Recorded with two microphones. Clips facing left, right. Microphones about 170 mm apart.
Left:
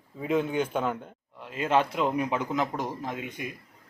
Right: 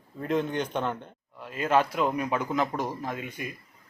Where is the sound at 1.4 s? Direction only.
20° left (ahead or behind).